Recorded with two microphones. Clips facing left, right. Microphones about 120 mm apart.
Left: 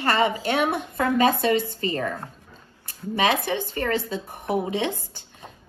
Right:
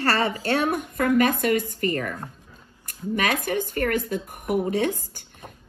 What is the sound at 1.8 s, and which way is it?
Speech, 20° left (ahead or behind).